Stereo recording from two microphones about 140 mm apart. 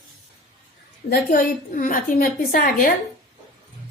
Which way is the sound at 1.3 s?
70° left (ahead or behind).